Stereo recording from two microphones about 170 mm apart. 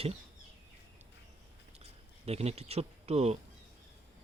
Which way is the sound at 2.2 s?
40° right (ahead or behind).